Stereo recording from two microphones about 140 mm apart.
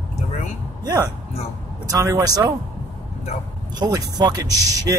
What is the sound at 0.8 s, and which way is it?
Speech, 25° right (ahead or behind).